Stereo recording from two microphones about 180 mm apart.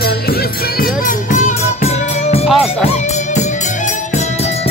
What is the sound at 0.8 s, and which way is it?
Music, 50° left (ahead or behind).